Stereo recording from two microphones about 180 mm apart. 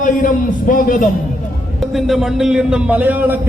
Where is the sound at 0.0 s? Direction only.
45° left (ahead or behind).